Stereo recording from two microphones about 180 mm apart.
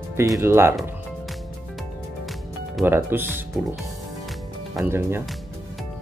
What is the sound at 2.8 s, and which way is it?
Speech, 10° right (ahead or behind).